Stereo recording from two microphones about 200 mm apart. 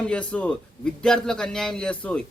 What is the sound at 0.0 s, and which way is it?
Speech, 5° left (ahead or behind).